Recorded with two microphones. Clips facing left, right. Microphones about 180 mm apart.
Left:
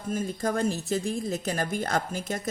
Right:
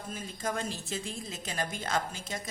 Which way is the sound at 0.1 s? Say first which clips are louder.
Left 8 dB; 45° left (ahead or behind).